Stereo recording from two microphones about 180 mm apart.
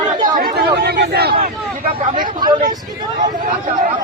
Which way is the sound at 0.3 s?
55° right (ahead or behind).